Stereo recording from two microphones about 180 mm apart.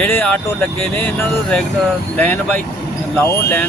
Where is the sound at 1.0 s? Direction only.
10° left (ahead or behind).